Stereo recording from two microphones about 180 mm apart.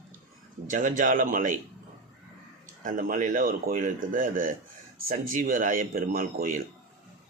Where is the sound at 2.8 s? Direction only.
50° right (ahead or behind).